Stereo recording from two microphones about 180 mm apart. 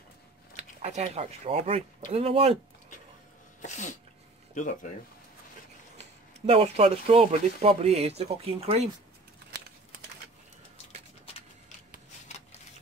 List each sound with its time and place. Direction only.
0.6 s speech: 35° right (ahead or behind)
3.6 s speech: 40° left (ahead or behind)
5.9 s speech: 35° right (ahead or behind)